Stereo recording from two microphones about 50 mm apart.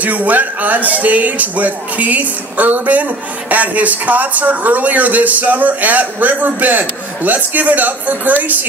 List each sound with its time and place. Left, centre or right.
0.0 s speech: right